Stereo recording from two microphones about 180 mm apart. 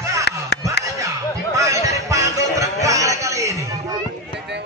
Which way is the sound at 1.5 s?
15° right (ahead or behind).